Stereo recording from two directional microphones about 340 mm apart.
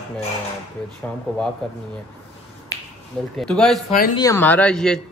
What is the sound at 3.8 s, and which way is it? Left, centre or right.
Speech, left.